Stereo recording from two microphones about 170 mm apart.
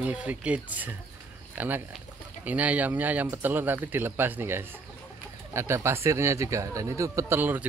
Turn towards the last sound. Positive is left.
turn(degrees=-10)  # may be behind; listen again after turning